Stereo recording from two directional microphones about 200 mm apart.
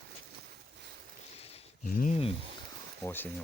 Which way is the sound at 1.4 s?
30° left (ahead or behind).